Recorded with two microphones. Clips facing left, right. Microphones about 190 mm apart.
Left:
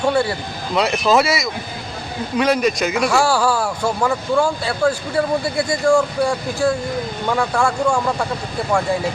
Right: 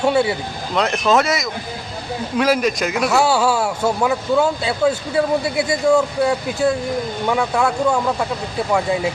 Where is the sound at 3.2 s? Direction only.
25° right (ahead or behind).